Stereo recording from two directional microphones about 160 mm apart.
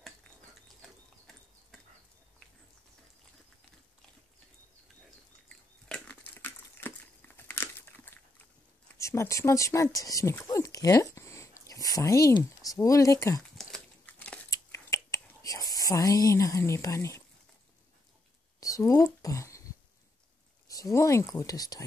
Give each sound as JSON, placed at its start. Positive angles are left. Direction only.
{"t": 0.8, "sound": "a sound", "side_deg": 0}
{"t": 5.9, "sound": "crumpling", "side_deg": 5}
{"t": 8.9, "sound": "speech", "side_deg": 20}
{"t": 14.5, "sound": "whispering", "side_deg": 20}
{"t": 18.6, "sound": "a sound", "side_deg": 20}
{"t": 20.6, "sound": "speech", "side_deg": 20}